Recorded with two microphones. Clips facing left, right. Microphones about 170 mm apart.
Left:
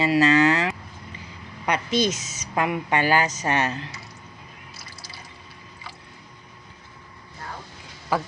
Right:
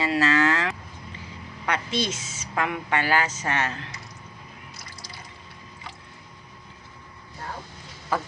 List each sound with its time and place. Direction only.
0.0 s speech: 15° left (ahead or behind)
2.1 s speech: 25° right (ahead or behind)
2.6 s speech: 15° left (ahead or behind)